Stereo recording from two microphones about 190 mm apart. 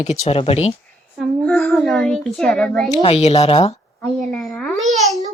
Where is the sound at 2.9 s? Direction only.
35° left (ahead or behind).